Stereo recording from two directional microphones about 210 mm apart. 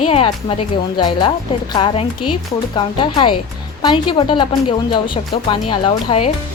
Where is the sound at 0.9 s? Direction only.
20° left (ahead or behind).